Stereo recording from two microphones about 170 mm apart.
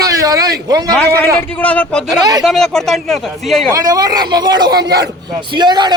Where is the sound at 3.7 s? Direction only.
20° right (ahead or behind).